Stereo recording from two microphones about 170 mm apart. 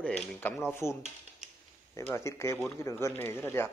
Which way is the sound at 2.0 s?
15° left (ahead or behind).